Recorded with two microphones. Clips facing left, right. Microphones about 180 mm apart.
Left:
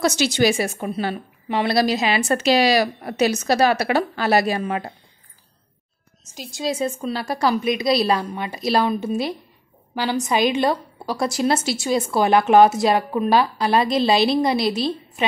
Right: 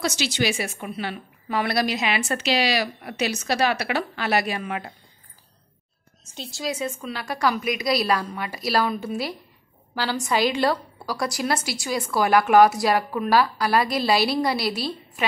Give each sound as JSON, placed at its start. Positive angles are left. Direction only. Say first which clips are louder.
{"t": 0.0, "sound": "a woman's voice", "louder": "left 6 dB", "side_deg": 45}
{"t": 6.3, "sound": "speech", "louder": "left 1 dB", "side_deg": 10}
{"t": 6.6, "sound": "a woman's voice", "louder": "left 5 dB", "side_deg": 30}